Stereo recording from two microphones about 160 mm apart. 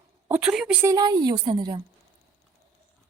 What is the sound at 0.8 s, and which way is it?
A woman's voice, 25° right (ahead or behind).